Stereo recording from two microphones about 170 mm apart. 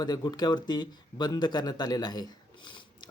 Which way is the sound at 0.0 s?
25° left (ahead or behind).